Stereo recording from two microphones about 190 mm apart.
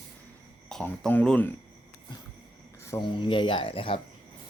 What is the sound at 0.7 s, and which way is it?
Speech, 5° left (ahead or behind).